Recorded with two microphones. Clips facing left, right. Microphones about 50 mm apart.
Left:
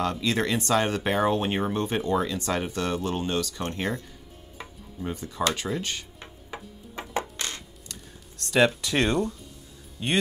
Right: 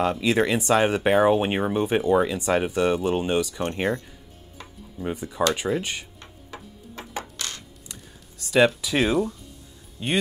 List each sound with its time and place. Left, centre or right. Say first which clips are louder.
0.0 s speech: right 4 dB; centre
4.9 s speech: right 3 dB; centre
6.1 s tick-tock: left 1 dB; centre
7.2 s a sound: left 3 dB; left
8.4 s speech: right 3 dB; centre